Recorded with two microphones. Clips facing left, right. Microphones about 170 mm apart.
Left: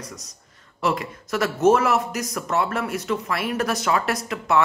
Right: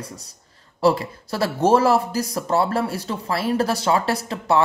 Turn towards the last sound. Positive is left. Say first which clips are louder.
# right 2 dB
turn(degrees=-30)  # may be behind; listen again after turning